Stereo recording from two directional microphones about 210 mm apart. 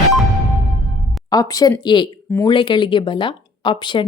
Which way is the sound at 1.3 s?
15° left (ahead or behind).